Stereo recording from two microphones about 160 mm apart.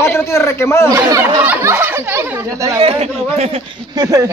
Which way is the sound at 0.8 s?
20° right (ahead or behind).